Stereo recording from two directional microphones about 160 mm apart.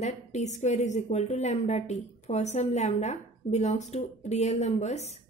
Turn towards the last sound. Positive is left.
turn(degrees=45)  # may be behind; listen again after turning